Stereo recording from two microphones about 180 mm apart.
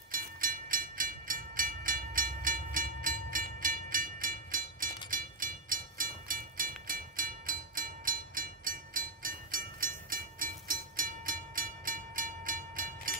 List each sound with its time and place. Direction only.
0.4 s train: 50° right (ahead or behind)
3.6 s music: 50° right (ahead or behind)